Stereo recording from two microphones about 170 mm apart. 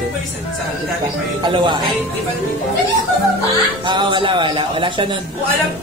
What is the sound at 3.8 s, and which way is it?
Speech, 25° right (ahead or behind).